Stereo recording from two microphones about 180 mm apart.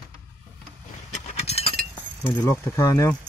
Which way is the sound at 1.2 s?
35° left (ahead or behind).